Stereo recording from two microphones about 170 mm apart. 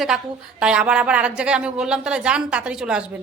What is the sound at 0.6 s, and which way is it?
A woman's voice, 5° right (ahead or behind).